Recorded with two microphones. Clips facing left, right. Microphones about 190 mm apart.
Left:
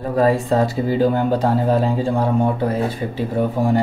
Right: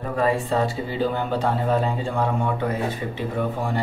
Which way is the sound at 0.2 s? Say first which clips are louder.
Left 5 dB; 40° left (ahead or behind).